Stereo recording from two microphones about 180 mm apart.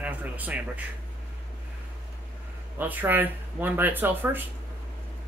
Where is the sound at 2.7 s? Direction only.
10° right (ahead or behind).